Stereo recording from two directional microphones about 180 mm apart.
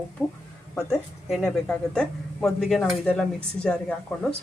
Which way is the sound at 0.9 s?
Centre (ahead or behind).